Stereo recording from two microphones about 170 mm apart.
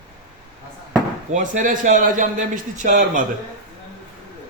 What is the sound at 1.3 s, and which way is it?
A man's voice, 50° right (ahead or behind).